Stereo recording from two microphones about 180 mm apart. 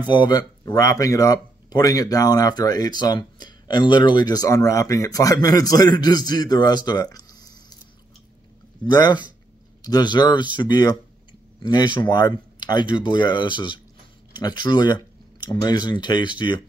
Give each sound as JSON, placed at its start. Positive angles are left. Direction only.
{"t": 0.1, "sound": "speech", "side_deg": 25}
{"t": 8.8, "sound": "speech", "side_deg": 25}